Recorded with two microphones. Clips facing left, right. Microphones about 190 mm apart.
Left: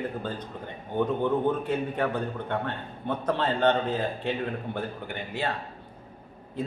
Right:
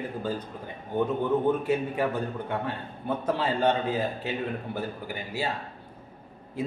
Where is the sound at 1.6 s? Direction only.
5° right (ahead or behind).